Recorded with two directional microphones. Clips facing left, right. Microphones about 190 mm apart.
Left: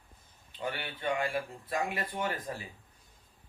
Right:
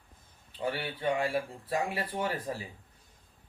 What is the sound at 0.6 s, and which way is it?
Speech, 35° right (ahead or behind).